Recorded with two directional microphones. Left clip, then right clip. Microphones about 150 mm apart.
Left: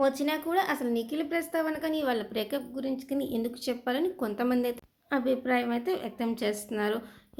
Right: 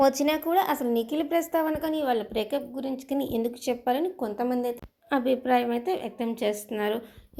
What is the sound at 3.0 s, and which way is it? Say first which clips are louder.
Speech: right 7 dB; 15° right (ahead or behind).